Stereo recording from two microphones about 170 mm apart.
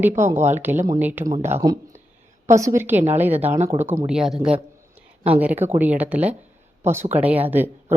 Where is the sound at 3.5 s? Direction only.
40° right (ahead or behind).